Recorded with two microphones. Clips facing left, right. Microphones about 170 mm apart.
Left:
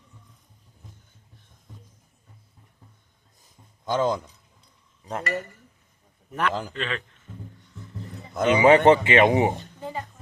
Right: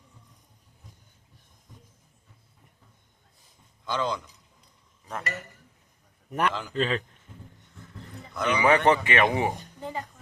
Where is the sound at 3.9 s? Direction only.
45° left (ahead or behind).